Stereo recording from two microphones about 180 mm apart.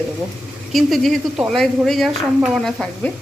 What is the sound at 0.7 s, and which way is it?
A woman's voice, centre (ahead or behind).